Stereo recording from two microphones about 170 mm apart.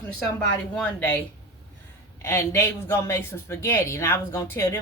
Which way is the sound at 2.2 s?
15° left (ahead or behind).